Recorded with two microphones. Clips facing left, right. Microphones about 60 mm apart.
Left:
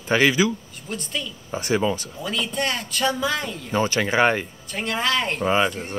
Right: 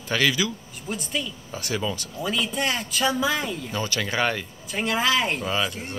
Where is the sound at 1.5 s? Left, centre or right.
Left.